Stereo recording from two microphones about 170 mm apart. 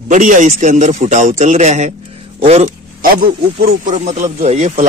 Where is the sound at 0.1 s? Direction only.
45° right (ahead or behind).